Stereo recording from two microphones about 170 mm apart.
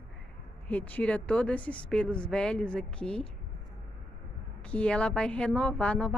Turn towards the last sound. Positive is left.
turn(degrees=5)  # may be behind; listen again after turning